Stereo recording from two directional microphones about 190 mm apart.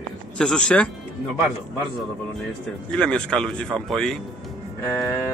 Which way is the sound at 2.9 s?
5° left (ahead or behind).